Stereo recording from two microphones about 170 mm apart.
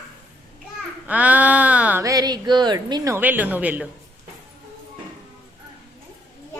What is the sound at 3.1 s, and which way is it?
Speech, 10° right (ahead or behind).